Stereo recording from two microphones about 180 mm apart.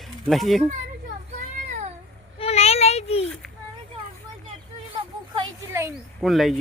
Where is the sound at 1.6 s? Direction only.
40° right (ahead or behind).